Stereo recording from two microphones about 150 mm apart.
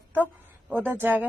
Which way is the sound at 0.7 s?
10° right (ahead or behind).